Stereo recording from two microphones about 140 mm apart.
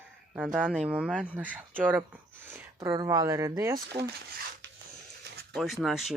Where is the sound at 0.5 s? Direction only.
5° right (ahead or behind); by 3.8 s 25° right (ahead or behind).